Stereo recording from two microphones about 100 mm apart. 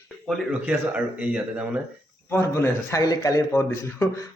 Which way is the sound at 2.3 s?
25° left (ahead or behind).